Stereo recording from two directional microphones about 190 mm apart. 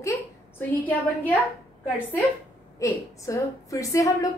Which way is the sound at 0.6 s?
10° left (ahead or behind).